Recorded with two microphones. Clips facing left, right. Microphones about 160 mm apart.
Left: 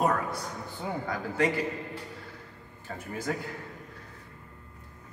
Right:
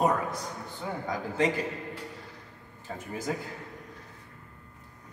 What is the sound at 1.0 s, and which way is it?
Speech, 15° right (ahead or behind).